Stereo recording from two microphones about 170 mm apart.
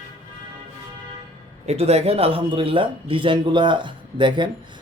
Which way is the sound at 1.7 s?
40° right (ahead or behind).